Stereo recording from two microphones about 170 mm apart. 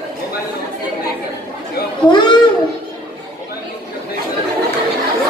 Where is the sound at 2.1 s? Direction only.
30° left (ahead or behind).